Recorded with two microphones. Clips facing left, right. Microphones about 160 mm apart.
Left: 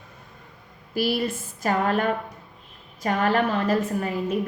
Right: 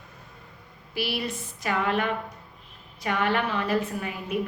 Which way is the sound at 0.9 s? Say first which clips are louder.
Left 6 dB; 45° left (ahead or behind).